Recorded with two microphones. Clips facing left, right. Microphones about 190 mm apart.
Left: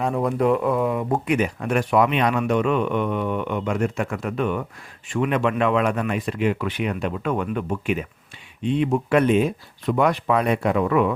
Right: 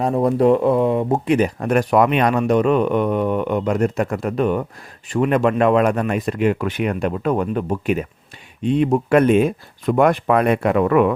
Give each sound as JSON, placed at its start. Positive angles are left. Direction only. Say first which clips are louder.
{"t": 0.0, "sound": "speech", "louder": "right 5 dB", "side_deg": -35}